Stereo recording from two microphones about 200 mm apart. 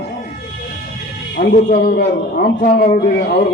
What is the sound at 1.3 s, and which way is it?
A man's voice, 45° left (ahead or behind).